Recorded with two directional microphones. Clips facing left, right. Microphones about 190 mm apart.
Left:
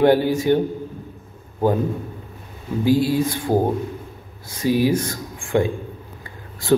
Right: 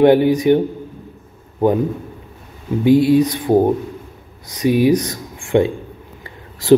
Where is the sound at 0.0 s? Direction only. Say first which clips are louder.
Right 5 dB; 20° right (ahead or behind).